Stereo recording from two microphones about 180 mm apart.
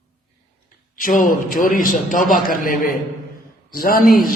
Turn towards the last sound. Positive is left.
turn(degrees=55)  # may be behind; listen again after turning